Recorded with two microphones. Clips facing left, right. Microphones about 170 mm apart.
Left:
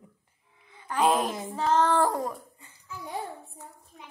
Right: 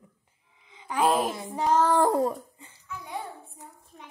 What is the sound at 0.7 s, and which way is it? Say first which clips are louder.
Music: even; 15° right (ahead or behind).